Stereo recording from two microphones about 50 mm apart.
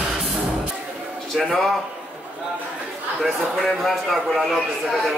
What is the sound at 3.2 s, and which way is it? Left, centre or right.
A man's voice, centre.